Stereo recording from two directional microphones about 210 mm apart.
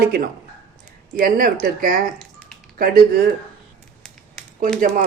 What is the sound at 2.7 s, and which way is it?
Speech, 45° right (ahead or behind).